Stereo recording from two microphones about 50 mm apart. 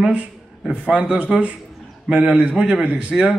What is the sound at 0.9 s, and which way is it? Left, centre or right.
Speech, centre.